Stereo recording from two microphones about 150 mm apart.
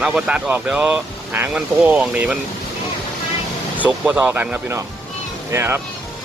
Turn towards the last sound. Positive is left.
turn(degrees=-15)  # may be behind; listen again after turning